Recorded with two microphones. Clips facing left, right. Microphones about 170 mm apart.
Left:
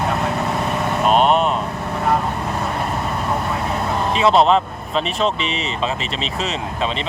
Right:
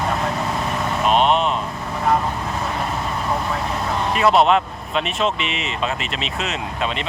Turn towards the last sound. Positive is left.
turn(degrees=35)  # may be behind; listen again after turning